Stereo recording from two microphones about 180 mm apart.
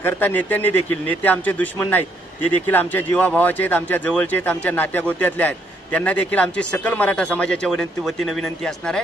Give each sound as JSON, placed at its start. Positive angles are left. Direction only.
{"t": 0.0, "sound": "a man's voice", "side_deg": 10}